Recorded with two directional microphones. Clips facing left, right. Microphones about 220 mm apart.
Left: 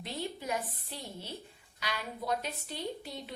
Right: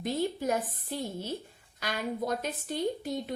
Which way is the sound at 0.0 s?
45° right (ahead or behind).